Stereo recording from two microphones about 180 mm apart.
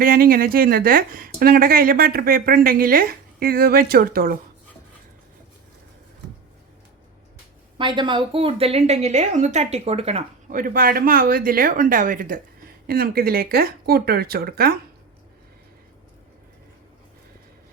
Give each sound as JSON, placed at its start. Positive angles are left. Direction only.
{"t": 0.0, "sound": "speech", "side_deg": -55}
{"t": 7.8, "sound": "a woman's voice", "side_deg": -25}
{"t": 10.5, "sound": "speech", "side_deg": -50}